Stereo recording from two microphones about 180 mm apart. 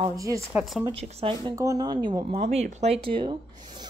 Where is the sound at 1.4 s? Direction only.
20° right (ahead or behind).